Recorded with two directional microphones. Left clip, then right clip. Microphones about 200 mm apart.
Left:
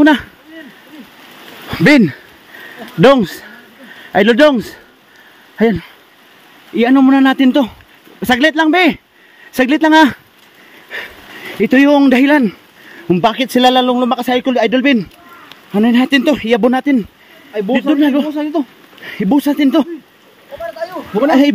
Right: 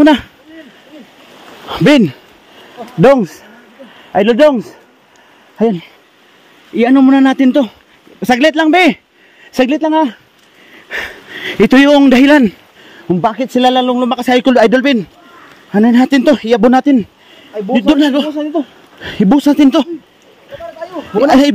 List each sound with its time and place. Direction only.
0.0 s speech: 10° right (ahead or behind)
1.7 s speech: 10° right (ahead or behind)
3.0 s speech: 5° left (ahead or behind)
6.7 s a man's voice: 10° right (ahead or behind)
9.8 s speech: 10° left (ahead or behind)
10.9 s a sound: 30° right (ahead or behind)
11.9 s speech: 20° right (ahead or behind)
13.1 s speech: 5° left (ahead or behind)
14.2 s a man's voice: 25° right (ahead or behind)
17.8 s speech: 35° right (ahead or behind)
18.3 s speech: 25° left (ahead or behind)
19.0 s speech: 20° right (ahead or behind)